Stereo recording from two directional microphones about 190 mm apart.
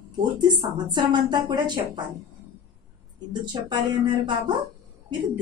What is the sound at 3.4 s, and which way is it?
A woman's voice, 25° right (ahead or behind).